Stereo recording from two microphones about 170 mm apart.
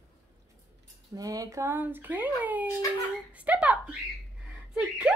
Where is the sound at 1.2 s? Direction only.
20° right (ahead or behind).